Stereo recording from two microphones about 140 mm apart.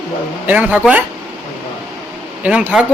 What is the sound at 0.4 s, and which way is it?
Speech, 10° right (ahead or behind).